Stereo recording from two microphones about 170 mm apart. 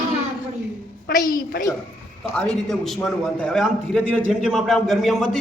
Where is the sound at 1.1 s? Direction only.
60° left (ahead or behind).